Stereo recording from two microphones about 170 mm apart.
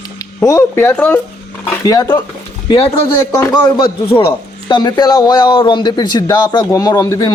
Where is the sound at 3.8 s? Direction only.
30° left (ahead or behind).